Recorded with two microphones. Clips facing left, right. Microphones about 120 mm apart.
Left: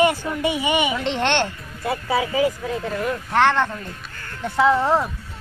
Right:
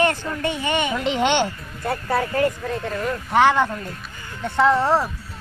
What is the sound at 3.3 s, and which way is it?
Speech, 10° right (ahead or behind).